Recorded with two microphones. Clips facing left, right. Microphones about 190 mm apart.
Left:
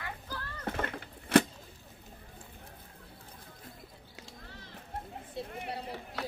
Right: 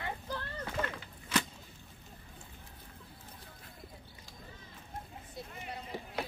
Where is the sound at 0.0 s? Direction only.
25° right (ahead or behind).